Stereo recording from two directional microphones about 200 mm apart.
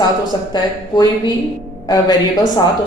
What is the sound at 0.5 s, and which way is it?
Speech, 20° left (ahead or behind).